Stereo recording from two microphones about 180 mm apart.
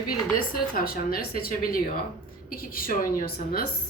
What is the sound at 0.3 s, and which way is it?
A woman's voice, 55° left (ahead or behind).